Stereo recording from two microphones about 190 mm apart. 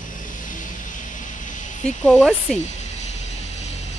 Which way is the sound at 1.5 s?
40° left (ahead or behind).